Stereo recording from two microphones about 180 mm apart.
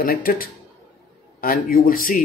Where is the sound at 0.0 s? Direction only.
55° left (ahead or behind).